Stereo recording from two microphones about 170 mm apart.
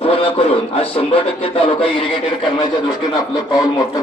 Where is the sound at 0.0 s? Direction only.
35° left (ahead or behind).